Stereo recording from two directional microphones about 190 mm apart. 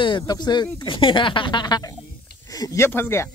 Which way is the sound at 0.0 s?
25° left (ahead or behind).